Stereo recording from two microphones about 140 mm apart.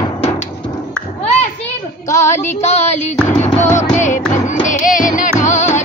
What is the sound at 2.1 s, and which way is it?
Child singing, 55° left (ahead or behind).